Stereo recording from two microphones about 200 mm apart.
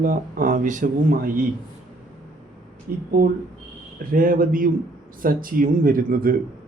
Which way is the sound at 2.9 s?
45° right (ahead or behind).